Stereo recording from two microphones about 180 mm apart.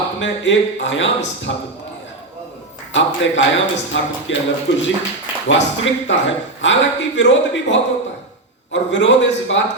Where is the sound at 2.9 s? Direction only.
90° left.